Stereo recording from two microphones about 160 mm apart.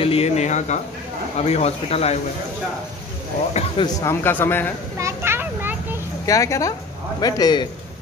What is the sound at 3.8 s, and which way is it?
Speech, 15° left (ahead or behind).